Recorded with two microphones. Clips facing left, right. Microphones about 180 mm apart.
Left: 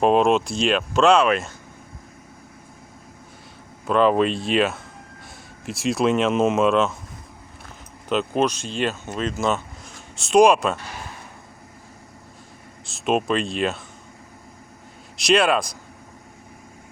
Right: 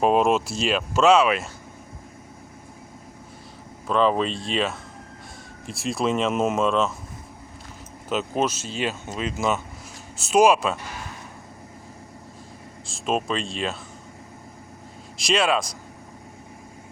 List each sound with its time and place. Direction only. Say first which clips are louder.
0.0 s speech: left 2 dB; 5° right (ahead or behind)
3.8 s speech: left 3 dB; 5° left (ahead or behind)
8.1 s speech: left 3 dB; 5° right (ahead or behind)
12.9 s speech: left 4 dB; 5° left (ahead or behind)
15.2 s speech: left 3 dB; centre (ahead or behind)